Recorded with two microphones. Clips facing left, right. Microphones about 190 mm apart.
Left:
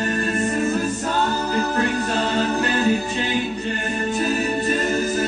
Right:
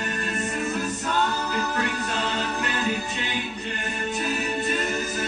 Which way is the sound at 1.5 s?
30° left (ahead or behind).